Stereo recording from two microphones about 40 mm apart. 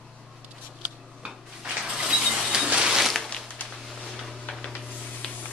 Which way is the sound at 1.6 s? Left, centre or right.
Centre.